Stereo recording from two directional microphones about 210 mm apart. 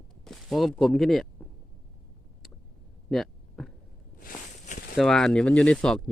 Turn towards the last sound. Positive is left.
turn(degrees=5)  # may be behind; listen again after turning